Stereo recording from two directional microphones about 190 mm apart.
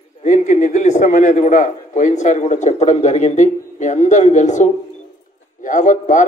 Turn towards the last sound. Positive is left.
turn(degrees=40)  # may be behind; listen again after turning